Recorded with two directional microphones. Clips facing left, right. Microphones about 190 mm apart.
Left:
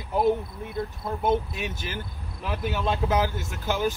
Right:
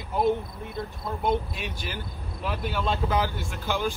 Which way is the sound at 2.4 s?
15° left (ahead or behind).